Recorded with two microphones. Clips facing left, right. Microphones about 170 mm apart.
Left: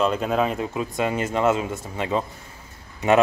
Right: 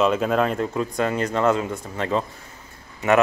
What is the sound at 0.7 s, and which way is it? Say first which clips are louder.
Speech: right 1 dB; 20° left (ahead or behind).